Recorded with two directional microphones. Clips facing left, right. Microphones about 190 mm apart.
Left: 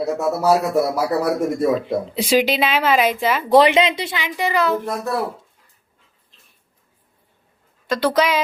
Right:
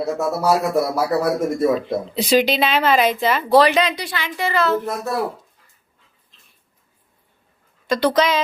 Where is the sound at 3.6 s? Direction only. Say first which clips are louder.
Left 2 dB; 25° left (ahead or behind).